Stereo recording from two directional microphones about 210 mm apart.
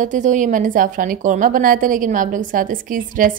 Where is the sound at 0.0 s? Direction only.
35° right (ahead or behind).